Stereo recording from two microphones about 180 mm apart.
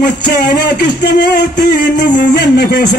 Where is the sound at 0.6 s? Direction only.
65° left (ahead or behind).